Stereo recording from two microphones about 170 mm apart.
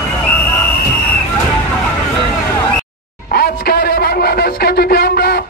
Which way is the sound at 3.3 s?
65° left (ahead or behind).